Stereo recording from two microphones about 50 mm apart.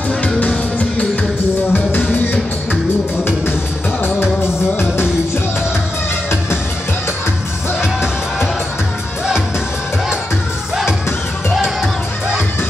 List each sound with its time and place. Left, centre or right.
1.7 s music: left
2.0 s music: left
7.8 s music: centre